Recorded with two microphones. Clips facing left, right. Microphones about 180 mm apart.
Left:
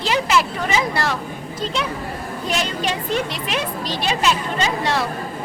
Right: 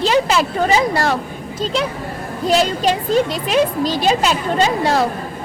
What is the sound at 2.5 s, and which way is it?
A woman's voice, 35° right (ahead or behind).